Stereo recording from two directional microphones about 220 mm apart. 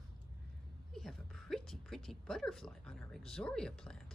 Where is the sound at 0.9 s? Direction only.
Centre (ahead or behind).